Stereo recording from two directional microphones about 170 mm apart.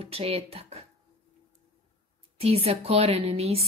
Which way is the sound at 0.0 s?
35° right (ahead or behind).